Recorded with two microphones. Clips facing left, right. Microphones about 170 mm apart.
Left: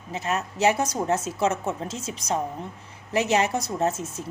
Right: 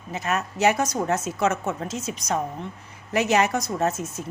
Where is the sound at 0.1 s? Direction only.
30° left (ahead or behind).